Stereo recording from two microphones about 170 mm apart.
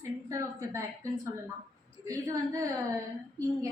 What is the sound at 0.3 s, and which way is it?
A woman's voice, 20° right (ahead or behind).